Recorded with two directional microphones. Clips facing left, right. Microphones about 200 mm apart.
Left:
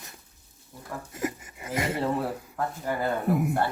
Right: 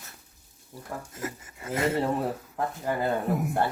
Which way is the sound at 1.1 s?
15° left (ahead or behind).